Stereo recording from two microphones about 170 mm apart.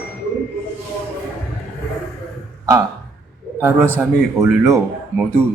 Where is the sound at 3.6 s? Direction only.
15° right (ahead or behind).